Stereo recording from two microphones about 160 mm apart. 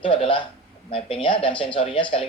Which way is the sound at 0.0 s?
35° left (ahead or behind).